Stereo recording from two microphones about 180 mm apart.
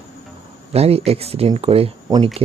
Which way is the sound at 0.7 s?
35° right (ahead or behind).